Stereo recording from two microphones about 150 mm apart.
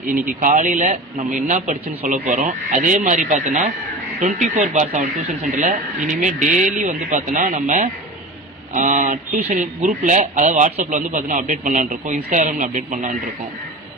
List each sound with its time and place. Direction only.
0.3 s speech: 55° right (ahead or behind)